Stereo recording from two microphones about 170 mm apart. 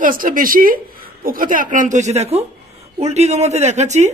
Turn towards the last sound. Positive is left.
turn(degrees=-40)  # may be behind; listen again after turning